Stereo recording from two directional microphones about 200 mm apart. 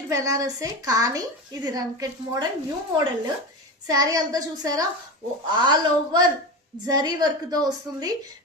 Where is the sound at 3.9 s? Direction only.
15° right (ahead or behind).